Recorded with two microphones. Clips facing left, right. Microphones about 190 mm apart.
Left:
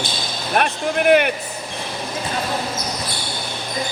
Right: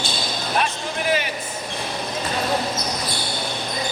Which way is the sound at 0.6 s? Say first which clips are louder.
Left 4 dB; 60° left (ahead or behind).